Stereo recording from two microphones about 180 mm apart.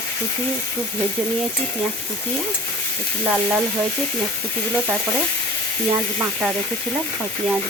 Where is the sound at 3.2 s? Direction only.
5° right (ahead or behind).